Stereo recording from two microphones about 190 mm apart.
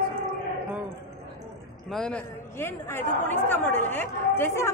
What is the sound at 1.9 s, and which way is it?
A woman's voice, 5° left (ahead or behind).